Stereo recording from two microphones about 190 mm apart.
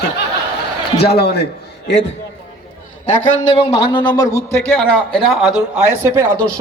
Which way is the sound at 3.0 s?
40° left (ahead or behind).